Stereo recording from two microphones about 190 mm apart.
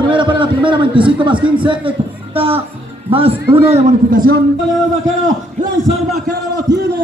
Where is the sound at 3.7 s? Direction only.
40° right (ahead or behind).